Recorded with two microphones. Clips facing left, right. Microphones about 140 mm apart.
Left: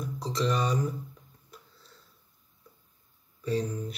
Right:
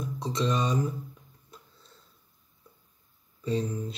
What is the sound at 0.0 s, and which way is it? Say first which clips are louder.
Mantra: even; 25° right (ahead or behind).